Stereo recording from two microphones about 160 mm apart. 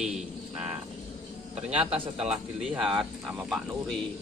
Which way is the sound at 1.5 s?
40° right (ahead or behind).